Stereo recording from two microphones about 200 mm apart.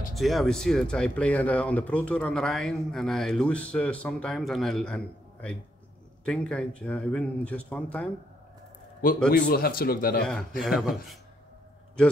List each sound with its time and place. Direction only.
0.1 s speech: centre (ahead or behind)
9.5 s speech: 50° left (ahead or behind)
10.6 s speech: centre (ahead or behind)